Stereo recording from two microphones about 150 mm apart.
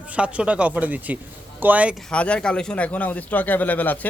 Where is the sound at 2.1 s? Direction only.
10° left (ahead or behind).